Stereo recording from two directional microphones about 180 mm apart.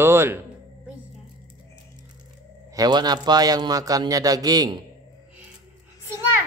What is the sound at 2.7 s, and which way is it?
A man's voice, 20° right (ahead or behind).